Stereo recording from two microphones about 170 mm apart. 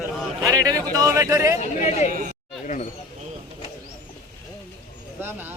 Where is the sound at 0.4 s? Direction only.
20° right (ahead or behind).